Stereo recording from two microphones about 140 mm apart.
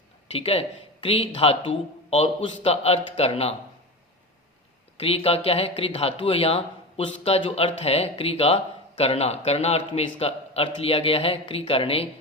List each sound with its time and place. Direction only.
0.3 s speech: 45° left (ahead or behind)
4.9 s speech: 45° left (ahead or behind)